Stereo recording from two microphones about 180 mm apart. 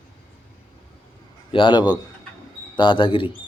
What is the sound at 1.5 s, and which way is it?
Speech, 25° left (ahead or behind).